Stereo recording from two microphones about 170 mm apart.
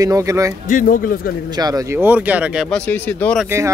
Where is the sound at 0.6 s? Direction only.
55° left (ahead or behind).